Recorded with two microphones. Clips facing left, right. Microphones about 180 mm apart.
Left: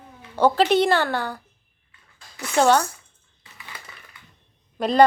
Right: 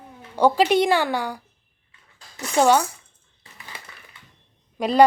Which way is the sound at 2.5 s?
10° right (ahead or behind).